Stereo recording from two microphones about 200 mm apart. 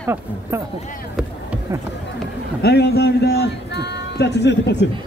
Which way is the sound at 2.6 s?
55° left (ahead or behind).